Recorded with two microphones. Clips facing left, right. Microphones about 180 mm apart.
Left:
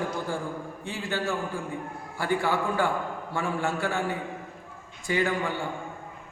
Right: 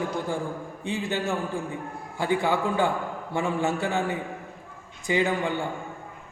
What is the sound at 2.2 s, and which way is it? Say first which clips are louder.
A man's voice: right 2 dB; 20° right (ahead or behind).